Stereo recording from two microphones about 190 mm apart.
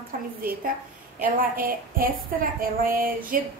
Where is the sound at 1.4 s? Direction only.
50° right (ahead or behind).